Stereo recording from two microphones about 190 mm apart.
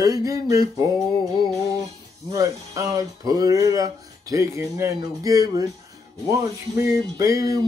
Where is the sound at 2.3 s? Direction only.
20° right (ahead or behind).